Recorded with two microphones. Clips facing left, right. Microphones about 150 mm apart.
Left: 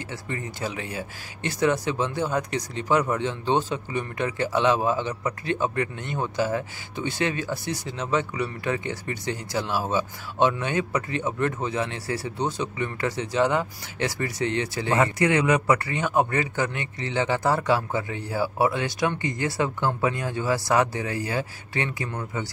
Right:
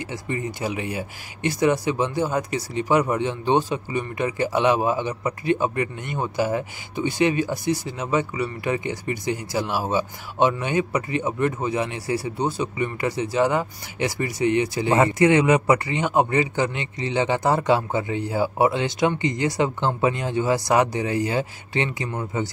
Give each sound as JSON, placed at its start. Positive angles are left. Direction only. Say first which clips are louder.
{"t": 0.1, "sound": "speech", "louder": "right 6 dB", "side_deg": -15}